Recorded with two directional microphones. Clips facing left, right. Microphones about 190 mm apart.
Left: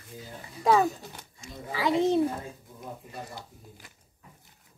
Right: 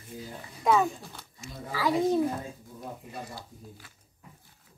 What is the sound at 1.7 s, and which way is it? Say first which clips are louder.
Speech: left 1 dB; 25° left (ahead or behind).